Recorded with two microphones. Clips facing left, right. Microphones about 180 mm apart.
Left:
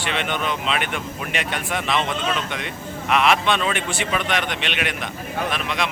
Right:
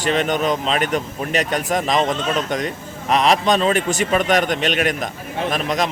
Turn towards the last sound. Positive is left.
turn(degrees=-40)  # may be behind; listen again after turning